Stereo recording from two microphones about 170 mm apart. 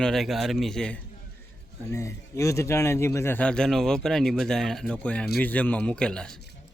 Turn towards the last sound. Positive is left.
turn(degrees=5)  # may be behind; listen again after turning